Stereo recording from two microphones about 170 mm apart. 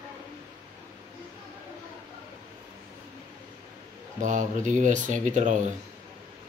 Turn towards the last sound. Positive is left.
turn(degrees=-45)  # may be behind; listen again after turning